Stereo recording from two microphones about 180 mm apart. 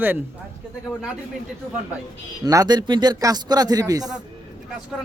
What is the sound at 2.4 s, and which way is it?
A man's voice, 20° right (ahead or behind).